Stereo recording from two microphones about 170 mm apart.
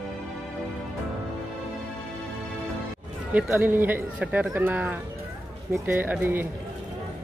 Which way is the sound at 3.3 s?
10° right (ahead or behind).